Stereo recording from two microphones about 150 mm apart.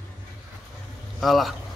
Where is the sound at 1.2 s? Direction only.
Centre (ahead or behind).